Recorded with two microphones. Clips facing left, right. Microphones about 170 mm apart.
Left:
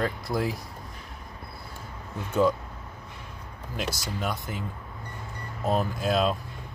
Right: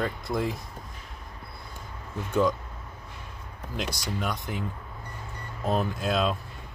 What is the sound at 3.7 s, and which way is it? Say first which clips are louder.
Speech: even; 5° left (ahead or behind).